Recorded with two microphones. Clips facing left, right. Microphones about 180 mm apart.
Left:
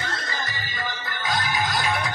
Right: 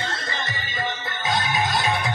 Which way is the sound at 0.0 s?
25° right (ahead or behind).